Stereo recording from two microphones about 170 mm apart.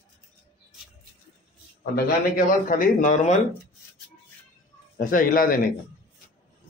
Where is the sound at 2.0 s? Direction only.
55° left (ahead or behind).